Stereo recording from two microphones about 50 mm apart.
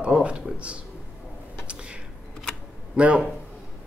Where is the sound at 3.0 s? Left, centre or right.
Right.